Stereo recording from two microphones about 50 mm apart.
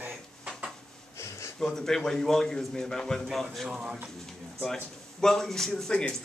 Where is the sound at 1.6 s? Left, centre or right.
Centre.